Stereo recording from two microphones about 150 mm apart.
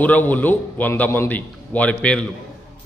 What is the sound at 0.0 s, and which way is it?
A man's voice, 10° left (ahead or behind).